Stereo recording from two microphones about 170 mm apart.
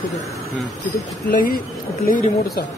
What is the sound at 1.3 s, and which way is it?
Speech, 55° left (ahead or behind).